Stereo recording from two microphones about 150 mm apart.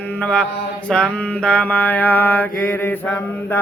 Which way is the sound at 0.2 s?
5° left (ahead or behind).